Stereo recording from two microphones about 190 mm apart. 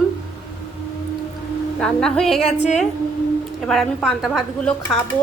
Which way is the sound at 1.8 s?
5° left (ahead or behind).